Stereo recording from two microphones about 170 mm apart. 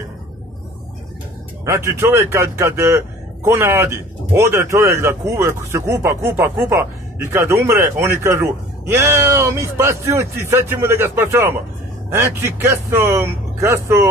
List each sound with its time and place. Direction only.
1.6 s speech: 15° right (ahead or behind)